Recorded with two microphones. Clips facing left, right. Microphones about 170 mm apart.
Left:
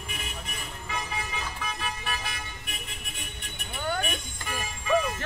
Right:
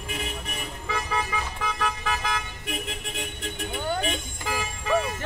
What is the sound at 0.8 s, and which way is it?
Car, 90° right.